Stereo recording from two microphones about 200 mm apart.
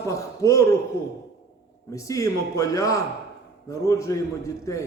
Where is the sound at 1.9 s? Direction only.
15° left (ahead or behind).